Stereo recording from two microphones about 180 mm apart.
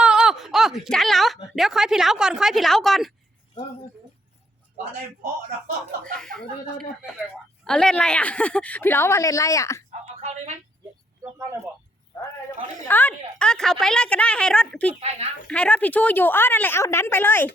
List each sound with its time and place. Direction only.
0.0 s speech: 5° right (ahead or behind)
5.2 s speech: 45° right (ahead or behind)
6.1 s a woman's voice: centre (ahead or behind)
7.6 s a woman's voice: 5° left (ahead or behind)
10.2 s speech: 40° right (ahead or behind)
12.9 s a woman's voice: 10° left (ahead or behind)